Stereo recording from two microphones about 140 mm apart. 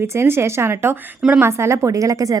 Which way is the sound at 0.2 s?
15° right (ahead or behind).